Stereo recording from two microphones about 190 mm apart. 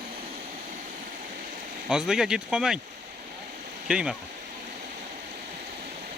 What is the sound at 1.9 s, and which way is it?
Speech, 5° right (ahead or behind).